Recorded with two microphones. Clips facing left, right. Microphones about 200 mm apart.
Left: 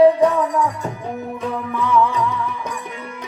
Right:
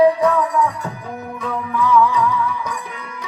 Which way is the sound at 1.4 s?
25° left (ahead or behind).